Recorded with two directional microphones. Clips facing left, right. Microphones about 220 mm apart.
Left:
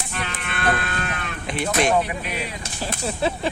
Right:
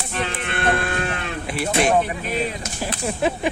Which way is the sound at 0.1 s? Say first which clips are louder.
Right 7 dB; 25° right (ahead or behind).